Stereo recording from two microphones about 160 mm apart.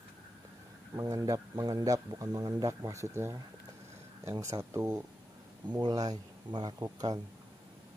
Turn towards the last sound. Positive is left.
turn(degrees=-25)  # may be behind; listen again after turning